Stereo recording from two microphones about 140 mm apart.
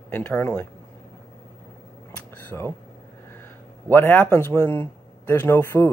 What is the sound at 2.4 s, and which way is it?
Speech, 15° left (ahead or behind).